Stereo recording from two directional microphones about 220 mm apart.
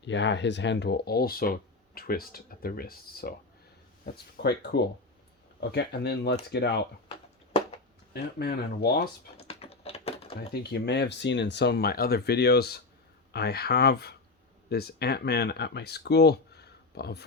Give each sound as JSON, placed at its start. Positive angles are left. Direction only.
{"t": 0.0, "sound": "speech", "side_deg": 55}
{"t": 8.1, "sound": "speech", "side_deg": 45}
{"t": 9.4, "sound": "a sound", "side_deg": 25}
{"t": 10.5, "sound": "speech", "side_deg": 50}